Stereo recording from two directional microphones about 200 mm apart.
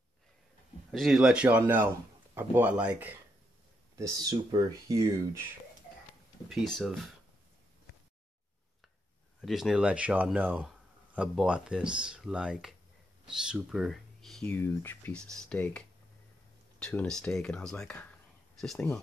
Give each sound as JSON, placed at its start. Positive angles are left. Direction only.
{"t": 0.9, "sound": "speech", "side_deg": 0}
{"t": 3.9, "sound": "speech", "side_deg": -20}
{"t": 6.5, "sound": "speech", "side_deg": 0}
{"t": 9.4, "sound": "speech", "side_deg": 0}
{"t": 16.8, "sound": "speech", "side_deg": 5}